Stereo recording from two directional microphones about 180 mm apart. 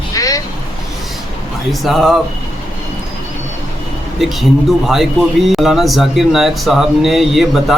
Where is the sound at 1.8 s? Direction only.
Centre (ahead or behind).